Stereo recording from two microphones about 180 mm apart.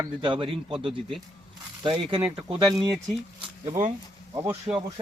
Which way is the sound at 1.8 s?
25° right (ahead or behind).